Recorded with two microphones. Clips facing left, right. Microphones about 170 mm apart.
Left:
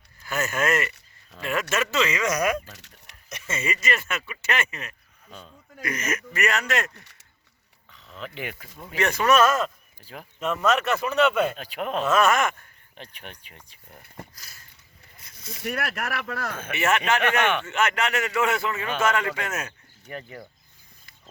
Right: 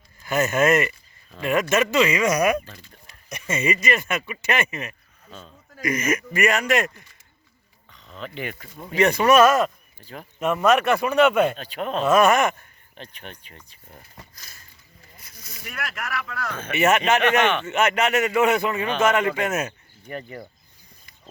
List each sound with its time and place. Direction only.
0.3 s a man's voice: 20° right (ahead or behind)
7.9 s speech: centre (ahead or behind)
9.0 s speech: 15° right (ahead or behind)
10.0 s speech: 10° left (ahead or behind)
10.4 s speech: 10° right (ahead or behind)
11.5 s speech: 10° left (ahead or behind)
12.0 s speech: 15° right (ahead or behind)
13.0 s speech: 10° left (ahead or behind)
15.2 s a sound: 25° left (ahead or behind)
15.7 s speech: 40° left (ahead or behind)
16.7 s a man's voice: 20° right (ahead or behind)
20.1 s speech: centre (ahead or behind)